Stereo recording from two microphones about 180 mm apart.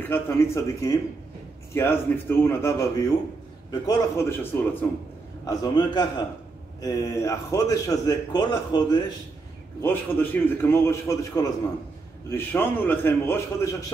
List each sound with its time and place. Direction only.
0.0 s a man's voice: 15° left (ahead or behind)
5.5 s a man's voice: 20° left (ahead or behind)
9.8 s a man's voice: 10° left (ahead or behind)